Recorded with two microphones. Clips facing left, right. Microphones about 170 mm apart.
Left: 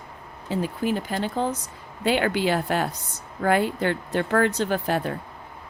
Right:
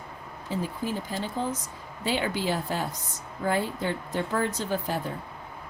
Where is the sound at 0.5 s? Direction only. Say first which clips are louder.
Left 5 dB; 75° left (ahead or behind).